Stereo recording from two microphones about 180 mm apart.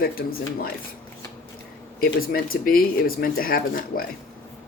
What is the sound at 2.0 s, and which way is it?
Speech, 55° left (ahead or behind).